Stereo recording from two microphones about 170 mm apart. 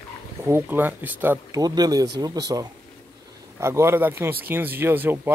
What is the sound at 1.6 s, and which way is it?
A man's voice, 20° right (ahead or behind).